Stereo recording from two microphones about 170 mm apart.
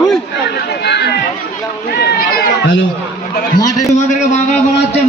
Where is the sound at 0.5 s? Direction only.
80° left.